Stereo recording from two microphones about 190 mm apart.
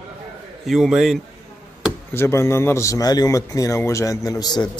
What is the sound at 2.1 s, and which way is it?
A man's voice, 15° left (ahead or behind).